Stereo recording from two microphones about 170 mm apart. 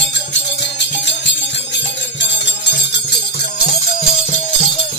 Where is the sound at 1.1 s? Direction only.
90° left.